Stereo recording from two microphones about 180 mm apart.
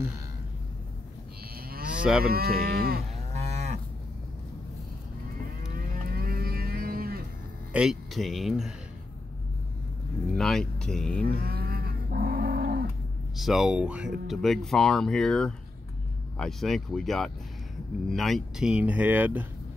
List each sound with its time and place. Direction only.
1.7 s moo: 55° right (ahead or behind)
2.2 s cattle: 55° right (ahead or behind)
3.3 s moo: 40° right (ahead or behind)
5.8 s livestock: 55° right (ahead or behind)
7.7 s speech: 5° right (ahead or behind)
10.3 s speech: centre (ahead or behind)
11.2 s livestock: 60° right (ahead or behind)
13.4 s speech: centre (ahead or behind)